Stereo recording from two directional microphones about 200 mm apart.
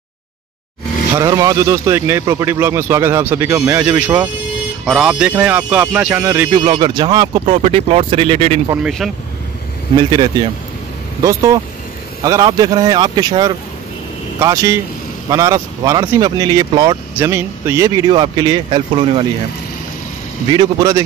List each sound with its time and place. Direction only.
1.1 s speech: 15° right (ahead or behind)
6.5 s speech: 25° right (ahead or behind)
8.8 s speech: centre (ahead or behind)
9.9 s speech: 20° right (ahead or behind)
20.5 s speech: 15° right (ahead or behind)